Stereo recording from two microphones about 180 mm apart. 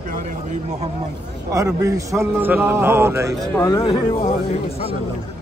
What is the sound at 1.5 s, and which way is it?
A man's voice, 20° right (ahead or behind).